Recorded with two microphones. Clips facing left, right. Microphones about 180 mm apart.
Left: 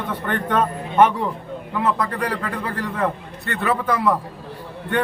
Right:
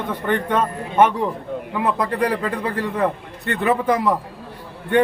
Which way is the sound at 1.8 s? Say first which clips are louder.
Right 1 dB; 15° right (ahead or behind).